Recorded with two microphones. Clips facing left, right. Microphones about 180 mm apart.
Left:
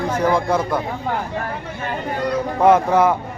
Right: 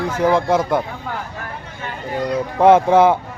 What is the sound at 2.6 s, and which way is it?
Speech, 25° right (ahead or behind).